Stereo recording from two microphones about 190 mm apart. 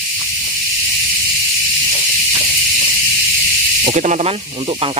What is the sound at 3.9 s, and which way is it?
Speech, 35° right (ahead or behind).